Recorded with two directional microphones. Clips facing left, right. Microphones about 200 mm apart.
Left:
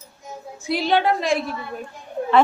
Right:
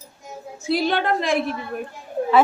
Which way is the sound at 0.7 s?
50° right (ahead or behind).